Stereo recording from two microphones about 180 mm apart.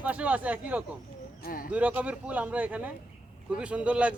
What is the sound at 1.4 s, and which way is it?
Speech, 50° left (ahead or behind).